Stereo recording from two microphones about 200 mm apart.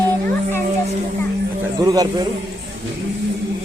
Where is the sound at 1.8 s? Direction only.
20° right (ahead or behind).